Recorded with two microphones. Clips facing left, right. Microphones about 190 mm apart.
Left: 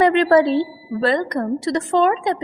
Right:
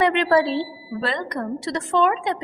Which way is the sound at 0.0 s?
40° left (ahead or behind).